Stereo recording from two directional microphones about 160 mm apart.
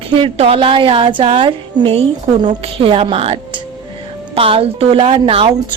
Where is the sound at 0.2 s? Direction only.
35° right (ahead or behind).